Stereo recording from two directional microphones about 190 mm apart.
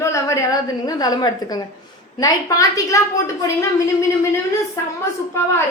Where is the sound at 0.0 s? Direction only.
15° left (ahead or behind).